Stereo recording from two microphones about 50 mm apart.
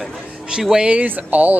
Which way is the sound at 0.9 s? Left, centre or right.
Right.